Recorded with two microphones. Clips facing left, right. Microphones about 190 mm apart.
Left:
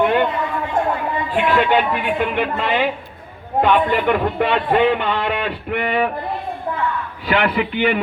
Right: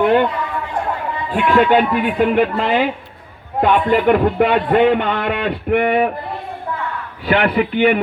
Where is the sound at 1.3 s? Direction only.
45° right (ahead or behind).